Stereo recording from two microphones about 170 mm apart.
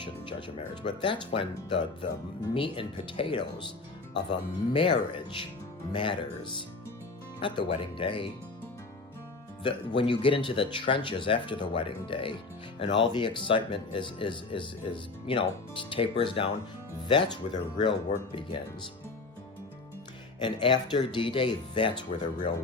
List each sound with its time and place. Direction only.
0.0 s speech: 30° left (ahead or behind)
9.6 s speech: 30° left (ahead or behind)
20.4 s speech: 30° left (ahead or behind)